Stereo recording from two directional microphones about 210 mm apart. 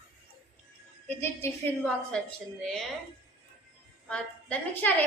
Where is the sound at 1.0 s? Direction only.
10° left (ahead or behind).